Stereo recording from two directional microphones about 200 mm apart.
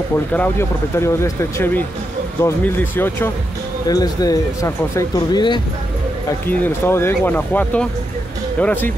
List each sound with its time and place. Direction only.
0.3 s speech: 10° left (ahead or behind)
6.4 s speech: 10° left (ahead or behind)